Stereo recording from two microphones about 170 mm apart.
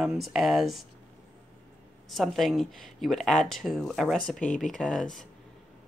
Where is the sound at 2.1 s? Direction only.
Centre (ahead or behind).